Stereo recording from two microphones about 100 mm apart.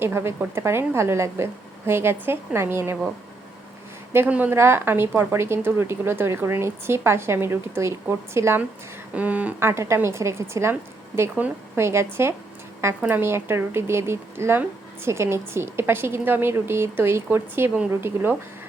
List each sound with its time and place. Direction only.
0.0 s a woman's voice: 25° right (ahead or behind)
4.3 s a woman's voice: 15° right (ahead or behind)
4.5 s a woman's voice: 25° right (ahead or behind)
9.1 s a woman's voice: 15° right (ahead or behind)